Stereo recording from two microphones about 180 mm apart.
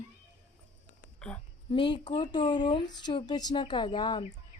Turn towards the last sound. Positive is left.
turn(degrees=25)  # may be behind; listen again after turning